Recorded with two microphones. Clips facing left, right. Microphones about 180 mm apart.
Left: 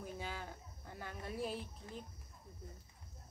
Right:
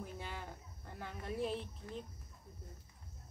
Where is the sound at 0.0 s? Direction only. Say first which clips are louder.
Left 1 dB; centre (ahead or behind).